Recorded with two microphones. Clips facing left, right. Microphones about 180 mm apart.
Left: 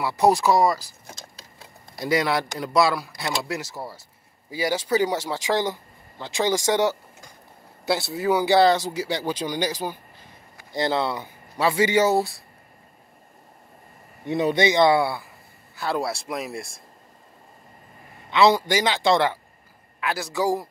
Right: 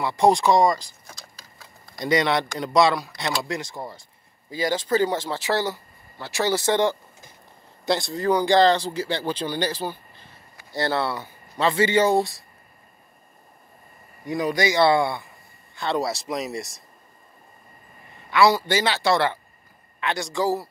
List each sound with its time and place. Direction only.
0.0 s speech: 5° left (ahead or behind)
1.0 s a sound: 20° left (ahead or behind)
2.0 s speech: 5° left (ahead or behind)
14.2 s speech: 25° left (ahead or behind); by 16.8 s centre (ahead or behind)
18.3 s speech: 20° left (ahead or behind)
20.0 s speech: 5° left (ahead or behind)